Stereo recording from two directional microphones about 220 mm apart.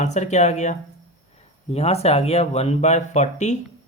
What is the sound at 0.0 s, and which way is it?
Speech, 30° left (ahead or behind).